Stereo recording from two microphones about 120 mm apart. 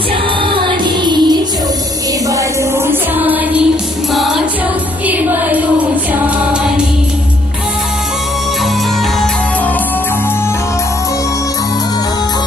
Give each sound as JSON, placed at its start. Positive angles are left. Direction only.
{"t": 0.5, "sound": "music", "side_deg": -40}
{"t": 2.3, "sound": "music", "side_deg": -20}
{"t": 4.1, "sound": "music", "side_deg": 0}
{"t": 5.0, "sound": "music", "side_deg": -15}